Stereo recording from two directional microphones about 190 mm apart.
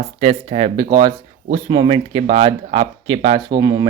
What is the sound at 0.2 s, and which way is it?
Speech, 30° right (ahead or behind).